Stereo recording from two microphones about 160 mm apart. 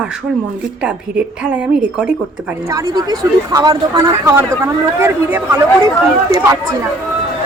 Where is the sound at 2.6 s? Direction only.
20° right (ahead or behind).